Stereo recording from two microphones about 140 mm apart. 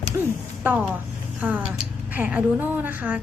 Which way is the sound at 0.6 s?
10° right (ahead or behind).